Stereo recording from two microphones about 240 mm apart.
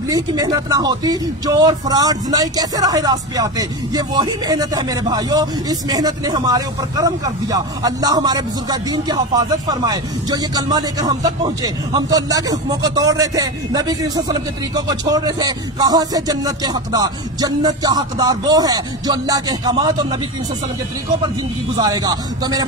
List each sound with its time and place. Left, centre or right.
0.1 s speech: centre
21.7 s speech: centre